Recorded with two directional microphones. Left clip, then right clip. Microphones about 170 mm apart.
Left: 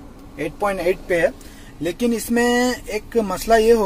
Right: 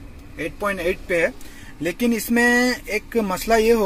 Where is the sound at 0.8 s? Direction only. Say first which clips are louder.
Left 1 dB; 25° right (ahead or behind).